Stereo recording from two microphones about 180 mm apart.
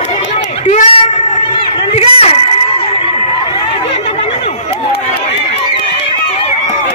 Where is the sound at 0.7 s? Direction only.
40° left (ahead or behind).